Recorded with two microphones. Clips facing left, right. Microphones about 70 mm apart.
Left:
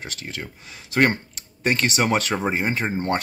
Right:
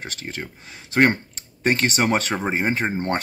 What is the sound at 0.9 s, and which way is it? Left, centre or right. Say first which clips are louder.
Speech: right 2 dB; right.